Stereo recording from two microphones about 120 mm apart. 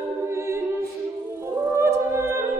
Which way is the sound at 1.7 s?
25° right (ahead or behind).